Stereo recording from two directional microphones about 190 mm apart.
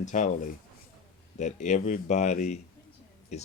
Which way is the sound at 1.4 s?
40° left (ahead or behind).